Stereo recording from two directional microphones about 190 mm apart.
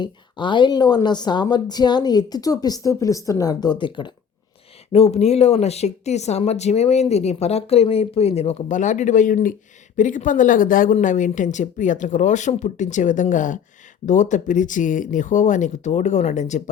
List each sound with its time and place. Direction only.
0.0 s a woman's voice: 25° left (ahead or behind)